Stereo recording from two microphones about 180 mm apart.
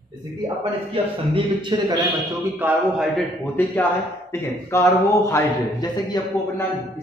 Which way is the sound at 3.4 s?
10° left (ahead or behind).